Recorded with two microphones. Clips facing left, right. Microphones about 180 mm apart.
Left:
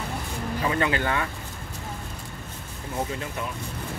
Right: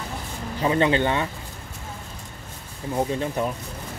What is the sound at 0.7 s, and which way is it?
Speech, 25° right (ahead or behind).